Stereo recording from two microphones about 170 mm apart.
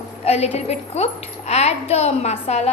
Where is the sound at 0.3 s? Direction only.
40° left (ahead or behind).